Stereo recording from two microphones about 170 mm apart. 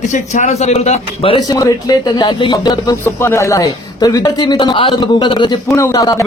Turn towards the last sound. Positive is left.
turn(degrees=20)  # may be behind; listen again after turning